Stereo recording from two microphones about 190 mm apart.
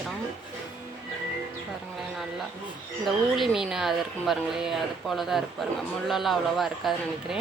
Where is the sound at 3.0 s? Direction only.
Centre (ahead or behind).